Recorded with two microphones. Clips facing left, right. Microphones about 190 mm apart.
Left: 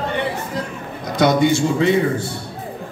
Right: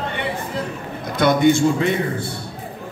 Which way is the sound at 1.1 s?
55° right (ahead or behind).